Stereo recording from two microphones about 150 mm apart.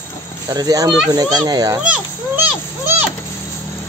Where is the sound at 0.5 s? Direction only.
25° right (ahead or behind).